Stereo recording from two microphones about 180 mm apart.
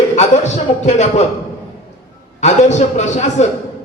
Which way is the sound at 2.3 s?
40° left (ahead or behind).